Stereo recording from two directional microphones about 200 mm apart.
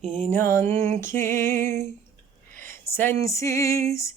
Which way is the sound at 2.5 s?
10° left (ahead or behind).